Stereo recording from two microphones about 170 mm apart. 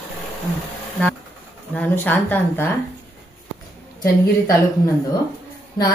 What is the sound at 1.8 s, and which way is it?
Speech, 10° left (ahead or behind).